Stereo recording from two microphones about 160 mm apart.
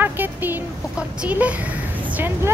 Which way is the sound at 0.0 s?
10° right (ahead or behind).